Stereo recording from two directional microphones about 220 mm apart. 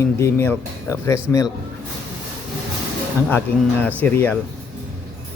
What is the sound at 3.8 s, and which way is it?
Speech, 10° left (ahead or behind).